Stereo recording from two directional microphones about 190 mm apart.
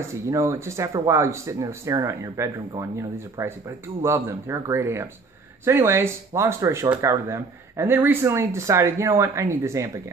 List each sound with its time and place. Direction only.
0.1 s speech: 15° right (ahead or behind)